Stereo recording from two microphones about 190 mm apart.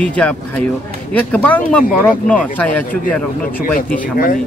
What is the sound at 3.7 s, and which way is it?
Speech, 50° left (ahead or behind).